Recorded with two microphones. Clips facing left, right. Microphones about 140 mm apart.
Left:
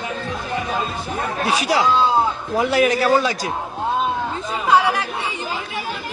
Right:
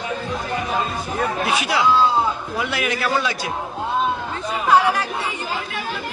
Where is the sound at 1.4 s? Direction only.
35° left (ahead or behind).